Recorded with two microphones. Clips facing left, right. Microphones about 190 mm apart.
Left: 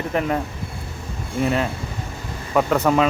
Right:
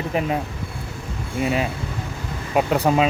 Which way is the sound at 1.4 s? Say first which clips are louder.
Left 1 dB; 15° right (ahead or behind).